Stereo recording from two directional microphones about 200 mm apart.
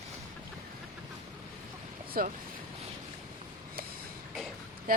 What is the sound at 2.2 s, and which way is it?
Speech, 45° right (ahead or behind).